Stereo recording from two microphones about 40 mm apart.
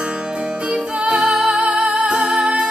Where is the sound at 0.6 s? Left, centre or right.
Right.